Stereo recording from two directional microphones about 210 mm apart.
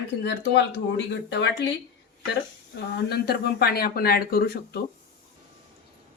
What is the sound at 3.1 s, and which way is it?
Speech, 50° left (ahead or behind).